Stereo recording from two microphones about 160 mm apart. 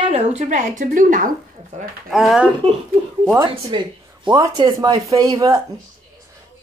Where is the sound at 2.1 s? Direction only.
Centre (ahead or behind).